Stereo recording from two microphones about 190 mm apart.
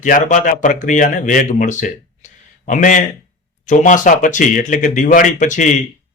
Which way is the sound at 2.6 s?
40° left (ahead or behind).